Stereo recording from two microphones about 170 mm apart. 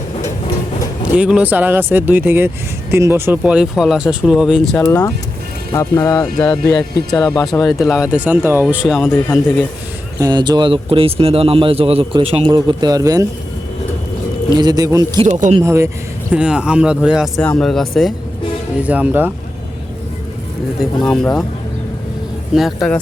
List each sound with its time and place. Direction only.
1.1 s speech: 5° right (ahead or behind)
4.9 s speech: 20° left (ahead or behind)
7.5 s speech: centre (ahead or behind)
10.2 s a man's voice: 25° right (ahead or behind)
14.5 s speech: 25° right (ahead or behind)
15.2 s a man's voice: 45° right (ahead or behind)
15.6 s speech: 15° right (ahead or behind)
16.3 s speech: 5° right (ahead or behind)
17.4 s speech: 5° left (ahead or behind); by 19.3 s 10° right (ahead or behind)
21.0 s speech: 5° left (ahead or behind)
22.5 s speech: centre (ahead or behind)